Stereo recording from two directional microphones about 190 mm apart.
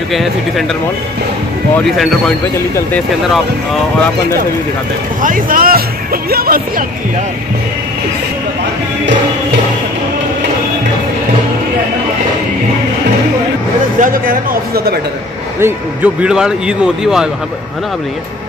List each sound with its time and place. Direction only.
0.1 s speech: centre (ahead or behind)
1.9 s speech: centre (ahead or behind)
5.2 s speech: 45° right (ahead or behind)
6.3 s music: 50° right (ahead or behind)
13.9 s speech: 45° right (ahead or behind)
15.6 s speech: 10° right (ahead or behind)